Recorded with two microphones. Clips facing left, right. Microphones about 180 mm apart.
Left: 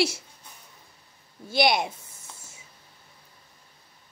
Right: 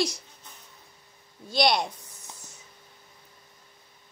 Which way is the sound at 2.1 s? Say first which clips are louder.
Right 1 dB; 25° left (ahead or behind).